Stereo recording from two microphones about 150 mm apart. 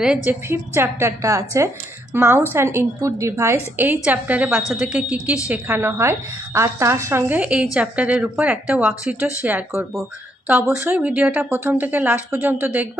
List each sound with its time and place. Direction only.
0.0 s a woman's voice: 10° right (ahead or behind)